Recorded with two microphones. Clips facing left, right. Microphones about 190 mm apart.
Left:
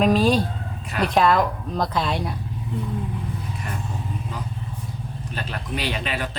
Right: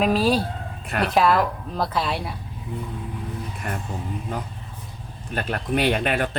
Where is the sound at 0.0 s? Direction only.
5° right (ahead or behind).